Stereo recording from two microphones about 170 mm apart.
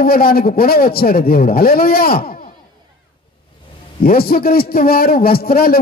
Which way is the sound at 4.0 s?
60° left (ahead or behind).